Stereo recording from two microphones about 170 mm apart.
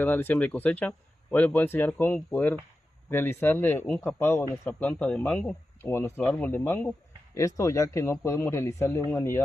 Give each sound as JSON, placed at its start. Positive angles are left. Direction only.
{"t": 0.0, "sound": "speech", "side_deg": 10}